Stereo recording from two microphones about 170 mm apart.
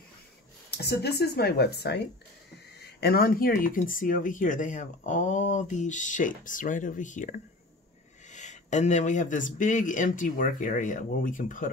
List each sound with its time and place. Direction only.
0.7 s speech: 70° left (ahead or behind); by 11.7 s 50° left (ahead or behind)